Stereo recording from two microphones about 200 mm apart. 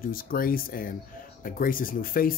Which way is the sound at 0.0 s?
45° left (ahead or behind).